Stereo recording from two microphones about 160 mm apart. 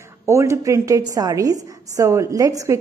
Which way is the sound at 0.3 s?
20° right (ahead or behind).